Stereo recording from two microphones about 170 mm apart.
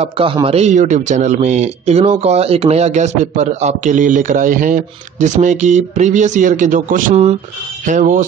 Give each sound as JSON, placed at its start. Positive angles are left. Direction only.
{"t": 0.0, "sound": "speech", "side_deg": -30}